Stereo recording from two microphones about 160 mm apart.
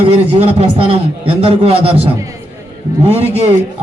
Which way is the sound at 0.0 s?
40° right (ahead or behind).